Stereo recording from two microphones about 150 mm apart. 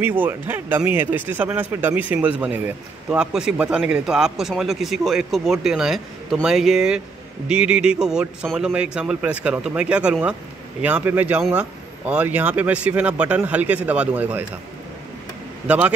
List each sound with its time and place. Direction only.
0.0 s a man's voice: 15° right (ahead or behind)
15.6 s a man's voice: 10° right (ahead or behind)